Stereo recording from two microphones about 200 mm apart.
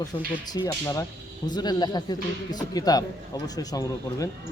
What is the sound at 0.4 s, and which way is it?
A man's voice, 20° left (ahead or behind).